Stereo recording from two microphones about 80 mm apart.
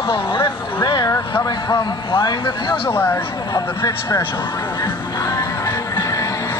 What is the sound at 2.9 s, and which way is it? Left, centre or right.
Speech, left.